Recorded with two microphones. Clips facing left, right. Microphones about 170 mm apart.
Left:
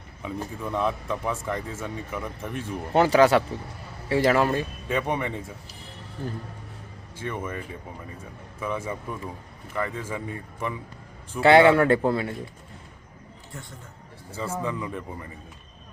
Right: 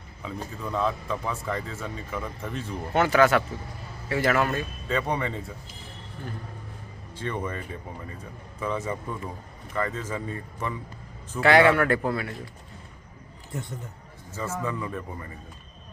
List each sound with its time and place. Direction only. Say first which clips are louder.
0.2 s speech: left 3 dB; 15° left (ahead or behind)
2.9 s speech: left 3 dB; 30° left (ahead or behind)
4.9 s speech: even; 20° left (ahead or behind)
7.2 s speech: right 1 dB; 10° left (ahead or behind)
8.6 s speech: right 1 dB; 10° left (ahead or behind)
11.3 s speech: left 3 dB; 25° left (ahead or behind)
13.5 s a man's voice: right 7 dB; 20° right (ahead or behind)
14.3 s speech: left 1 dB; 15° left (ahead or behind)